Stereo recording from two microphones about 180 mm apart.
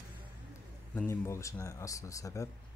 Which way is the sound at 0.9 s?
10° left (ahead or behind).